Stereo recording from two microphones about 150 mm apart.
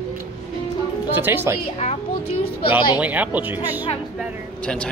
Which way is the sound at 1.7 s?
40° left (ahead or behind).